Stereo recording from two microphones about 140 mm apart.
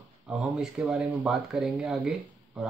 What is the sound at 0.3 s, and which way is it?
Speech, 5° right (ahead or behind).